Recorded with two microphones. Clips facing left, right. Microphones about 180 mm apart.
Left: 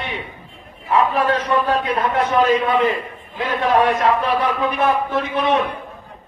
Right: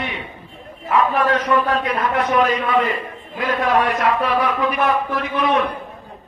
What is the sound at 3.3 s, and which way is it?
A man's voice, 25° left (ahead or behind).